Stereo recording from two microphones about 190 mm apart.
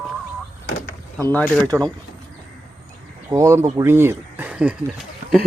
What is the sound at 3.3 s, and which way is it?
Speech, 15° right (ahead or behind).